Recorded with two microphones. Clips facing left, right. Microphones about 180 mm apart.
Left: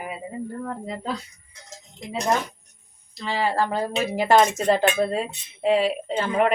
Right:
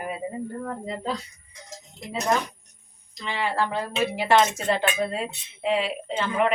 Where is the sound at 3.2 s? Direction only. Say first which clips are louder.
Left 3 dB; 35° left (ahead or behind).